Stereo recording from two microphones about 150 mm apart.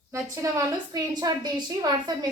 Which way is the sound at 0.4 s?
20° right (ahead or behind).